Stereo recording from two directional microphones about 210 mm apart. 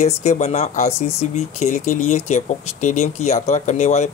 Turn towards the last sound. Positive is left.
turn(degrees=35)  # may be behind; listen again after turning